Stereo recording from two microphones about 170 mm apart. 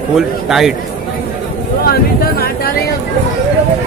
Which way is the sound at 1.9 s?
65° left (ahead or behind).